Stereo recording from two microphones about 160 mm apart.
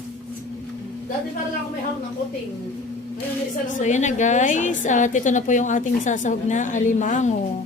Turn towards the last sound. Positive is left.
turn(degrees=50)  # may be behind; listen again after turning